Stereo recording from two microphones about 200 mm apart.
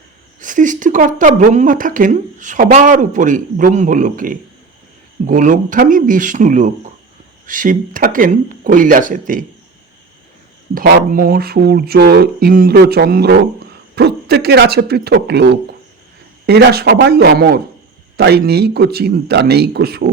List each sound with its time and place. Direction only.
0.3 s speech: 40° right (ahead or behind)
10.8 s speech: 45° right (ahead or behind)